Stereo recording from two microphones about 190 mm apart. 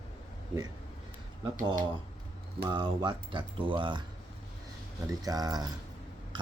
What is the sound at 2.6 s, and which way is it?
Speech, 25° right (ahead or behind).